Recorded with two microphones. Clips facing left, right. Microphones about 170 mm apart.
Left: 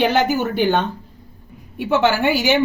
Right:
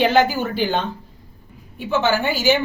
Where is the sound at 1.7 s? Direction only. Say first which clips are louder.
Left 3 dB; 70° left (ahead or behind).